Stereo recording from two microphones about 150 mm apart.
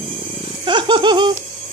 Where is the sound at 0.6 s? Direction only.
30° right (ahead or behind).